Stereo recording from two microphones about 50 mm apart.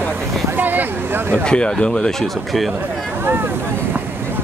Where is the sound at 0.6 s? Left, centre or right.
Right.